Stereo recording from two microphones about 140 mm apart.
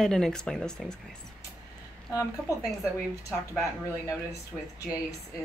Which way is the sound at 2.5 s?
25° left (ahead or behind).